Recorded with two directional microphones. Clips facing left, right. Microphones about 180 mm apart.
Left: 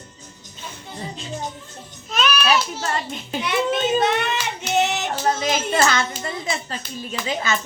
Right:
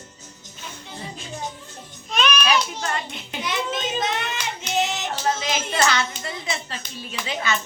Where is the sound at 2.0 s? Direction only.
5° left (ahead or behind).